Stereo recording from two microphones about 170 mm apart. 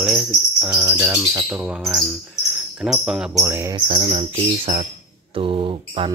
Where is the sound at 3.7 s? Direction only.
35° right (ahead or behind).